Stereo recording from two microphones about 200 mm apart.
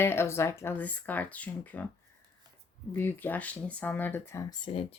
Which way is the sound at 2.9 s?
10° left (ahead or behind).